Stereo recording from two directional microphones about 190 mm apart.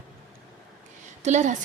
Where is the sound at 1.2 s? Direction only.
40° right (ahead or behind).